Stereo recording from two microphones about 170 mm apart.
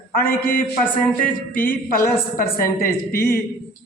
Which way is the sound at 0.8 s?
10° left (ahead or behind).